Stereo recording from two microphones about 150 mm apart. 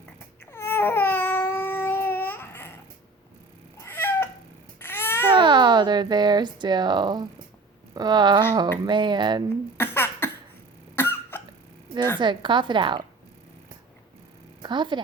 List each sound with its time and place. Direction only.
0.5 s babbling: 15° left (ahead or behind)
3.8 s cat: 15° left (ahead or behind)
4.8 s babbling: 15° left (ahead or behind)
5.3 s a sound: 30° right (ahead or behind)
7.9 s a woman's voice: 30° right (ahead or behind)
9.7 s cough: 15° left (ahead or behind)
12.2 s a woman's voice: 30° right (ahead or behind)
14.6 s a woman's voice: 30° right (ahead or behind)